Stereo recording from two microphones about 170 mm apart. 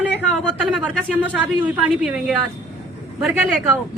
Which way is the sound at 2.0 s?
5° right (ahead or behind).